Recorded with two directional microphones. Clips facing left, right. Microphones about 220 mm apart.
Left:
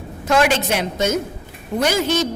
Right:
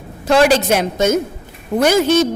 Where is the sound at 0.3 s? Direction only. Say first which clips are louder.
Right 5 dB; 35° right (ahead or behind).